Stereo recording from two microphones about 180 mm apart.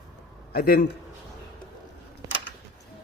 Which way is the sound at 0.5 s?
55° left (ahead or behind).